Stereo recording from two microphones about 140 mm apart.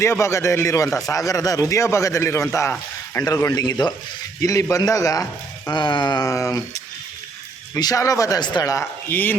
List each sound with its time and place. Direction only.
0.0 s speech: 20° left (ahead or behind)
0.9 s a man's voice: 5° left (ahead or behind)
1.1 s speech: 25° left (ahead or behind)
7.8 s speech: 25° left (ahead or behind)